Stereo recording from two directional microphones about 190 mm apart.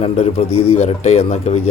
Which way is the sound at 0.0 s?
35° left (ahead or behind).